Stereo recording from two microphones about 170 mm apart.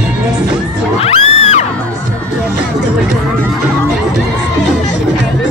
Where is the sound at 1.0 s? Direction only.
35° left (ahead or behind).